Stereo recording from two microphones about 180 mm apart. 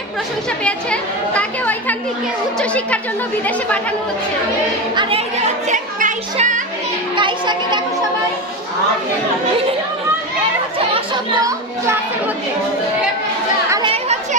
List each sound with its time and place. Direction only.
0.7 s chatter: 5° left (ahead or behind)
2.6 s speech: 5° left (ahead or behind)
5.7 s speech: 45° right (ahead or behind)
7.2 s speech: 25° right (ahead or behind)